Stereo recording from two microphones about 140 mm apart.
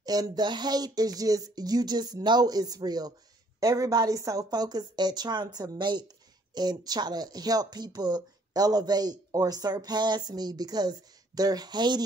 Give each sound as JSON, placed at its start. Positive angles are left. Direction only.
{"t": 0.0, "sound": "a woman's voice", "side_deg": -25}